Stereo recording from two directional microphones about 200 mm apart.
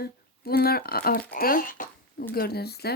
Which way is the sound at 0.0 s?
50° left (ahead or behind).